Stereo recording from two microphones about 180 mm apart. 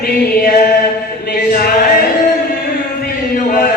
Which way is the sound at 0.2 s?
55° left (ahead or behind).